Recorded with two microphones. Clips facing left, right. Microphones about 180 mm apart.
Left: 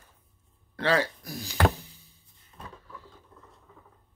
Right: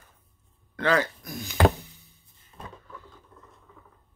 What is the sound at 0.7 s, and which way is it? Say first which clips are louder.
Speech: right 1 dB; 30° left (ahead or behind).